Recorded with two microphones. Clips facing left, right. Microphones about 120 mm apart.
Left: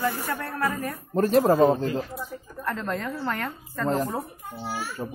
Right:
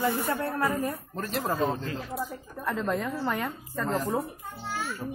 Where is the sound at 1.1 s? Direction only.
40° left (ahead or behind).